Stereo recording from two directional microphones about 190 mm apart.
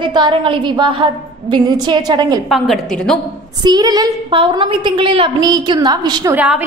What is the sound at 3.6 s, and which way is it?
A woman's voice, 20° right (ahead or behind).